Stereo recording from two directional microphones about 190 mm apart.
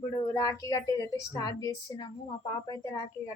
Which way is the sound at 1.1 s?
20° left (ahead or behind).